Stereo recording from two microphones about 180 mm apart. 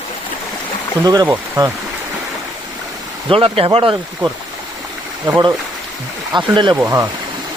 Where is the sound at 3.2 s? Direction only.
30° right (ahead or behind).